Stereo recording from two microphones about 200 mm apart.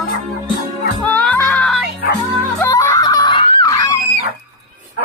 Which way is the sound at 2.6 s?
15° left (ahead or behind).